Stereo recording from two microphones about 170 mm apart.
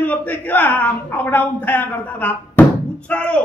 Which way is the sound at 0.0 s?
10° left (ahead or behind).